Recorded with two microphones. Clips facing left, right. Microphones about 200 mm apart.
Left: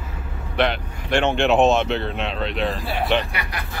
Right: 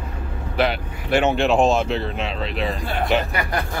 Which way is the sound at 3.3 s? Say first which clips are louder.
Right 6 dB; 45° right (ahead or behind).